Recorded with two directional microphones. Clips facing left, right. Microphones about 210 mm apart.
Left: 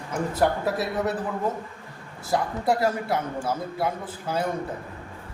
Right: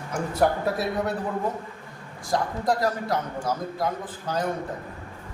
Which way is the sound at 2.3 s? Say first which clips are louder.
Left 1 dB; 10° left (ahead or behind).